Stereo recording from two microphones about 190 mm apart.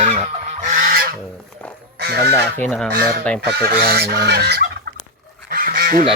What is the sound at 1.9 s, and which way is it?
Speech, 55° right (ahead or behind).